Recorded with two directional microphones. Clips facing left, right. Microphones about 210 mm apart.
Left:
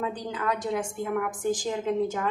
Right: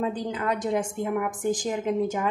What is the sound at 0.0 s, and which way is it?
A woman's voice, 25° right (ahead or behind).